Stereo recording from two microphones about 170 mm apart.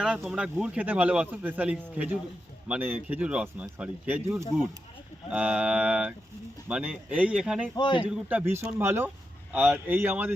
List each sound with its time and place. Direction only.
0.3 s a man's voice: 5° right (ahead or behind)
7.8 s a man's voice: 25° left (ahead or behind)
8.0 s a man's voice: 10° right (ahead or behind)